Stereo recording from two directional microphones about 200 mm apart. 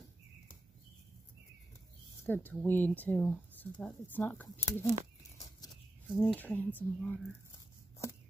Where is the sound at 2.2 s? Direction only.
10° left (ahead or behind).